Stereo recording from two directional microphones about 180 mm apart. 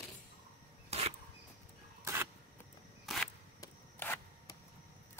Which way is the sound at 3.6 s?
10° left (ahead or behind).